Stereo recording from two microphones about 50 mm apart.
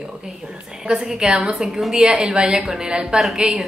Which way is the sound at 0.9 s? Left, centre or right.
Centre.